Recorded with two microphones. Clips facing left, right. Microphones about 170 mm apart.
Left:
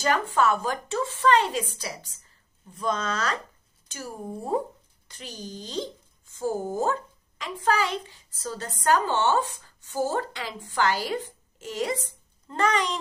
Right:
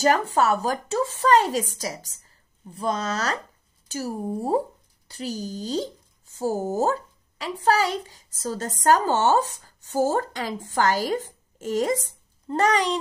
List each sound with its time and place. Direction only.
0.0 s speech: 40° right (ahead or behind)